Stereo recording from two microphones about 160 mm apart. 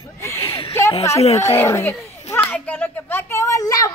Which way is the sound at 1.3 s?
15° left (ahead or behind).